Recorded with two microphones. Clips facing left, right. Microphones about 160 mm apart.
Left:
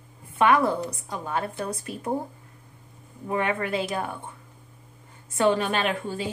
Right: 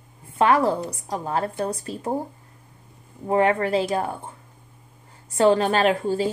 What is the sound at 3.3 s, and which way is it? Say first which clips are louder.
Speech: right 6 dB; 35° right (ahead or behind).